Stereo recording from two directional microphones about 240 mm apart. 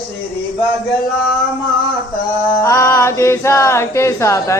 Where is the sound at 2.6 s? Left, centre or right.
Centre.